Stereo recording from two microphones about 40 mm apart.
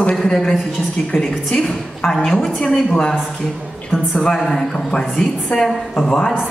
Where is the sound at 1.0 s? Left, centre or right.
Centre.